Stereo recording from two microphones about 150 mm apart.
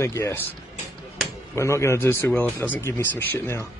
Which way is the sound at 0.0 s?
15° left (ahead or behind).